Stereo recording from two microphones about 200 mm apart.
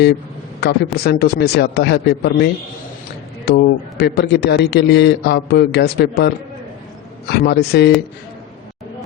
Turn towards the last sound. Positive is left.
turn(degrees=55)  # may be behind; listen again after turning